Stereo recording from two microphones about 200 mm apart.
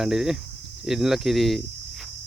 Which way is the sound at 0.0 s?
Centre (ahead or behind).